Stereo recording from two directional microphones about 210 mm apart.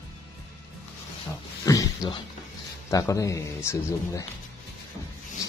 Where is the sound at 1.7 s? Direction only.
20° left (ahead or behind).